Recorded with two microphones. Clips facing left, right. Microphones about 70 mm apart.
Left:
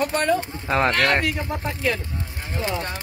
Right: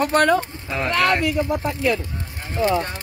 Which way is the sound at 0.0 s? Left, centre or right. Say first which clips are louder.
Right 5 dB; right.